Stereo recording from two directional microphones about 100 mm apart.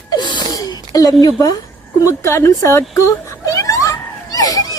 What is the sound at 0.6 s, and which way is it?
A woman's voice, 35° left (ahead or behind).